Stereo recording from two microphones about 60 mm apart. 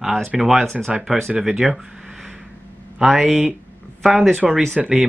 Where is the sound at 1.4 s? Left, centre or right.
Centre.